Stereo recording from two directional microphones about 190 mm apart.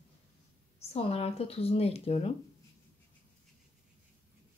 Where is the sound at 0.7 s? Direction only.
35° left (ahead or behind).